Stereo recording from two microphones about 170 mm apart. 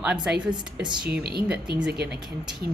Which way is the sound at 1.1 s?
70° right (ahead or behind).